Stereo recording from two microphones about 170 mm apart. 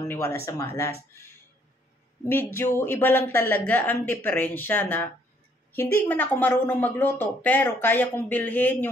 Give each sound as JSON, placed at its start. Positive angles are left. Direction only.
{"t": 0.1, "sound": "speech", "side_deg": 15}
{"t": 2.2, "sound": "speech", "side_deg": 15}